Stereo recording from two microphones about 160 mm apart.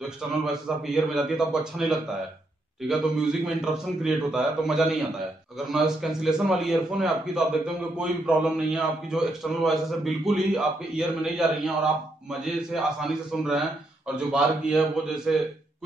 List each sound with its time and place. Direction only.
0.5 s a man's voice: 5° right (ahead or behind)